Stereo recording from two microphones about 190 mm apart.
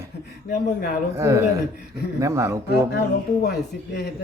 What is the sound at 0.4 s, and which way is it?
Speech, 60° left (ahead or behind).